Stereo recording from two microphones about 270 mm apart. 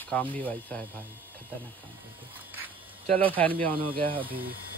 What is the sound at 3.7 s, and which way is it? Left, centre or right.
Speech, centre.